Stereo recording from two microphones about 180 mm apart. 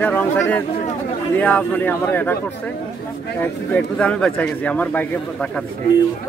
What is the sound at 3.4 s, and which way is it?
Speech, 10° left (ahead or behind).